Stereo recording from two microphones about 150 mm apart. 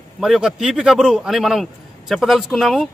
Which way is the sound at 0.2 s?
Centre (ahead or behind).